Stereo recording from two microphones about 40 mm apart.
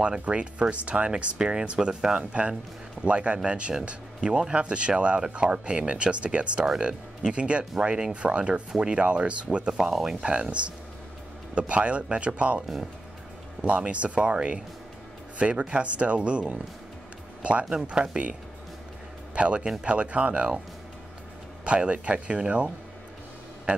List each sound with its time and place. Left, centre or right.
0.0 s speech: right
6.9 s speech: centre
7.3 s speech: right
9.7 s speech: centre
10.2 s a man's voice: right
19.3 s speech: right
21.6 s speech: right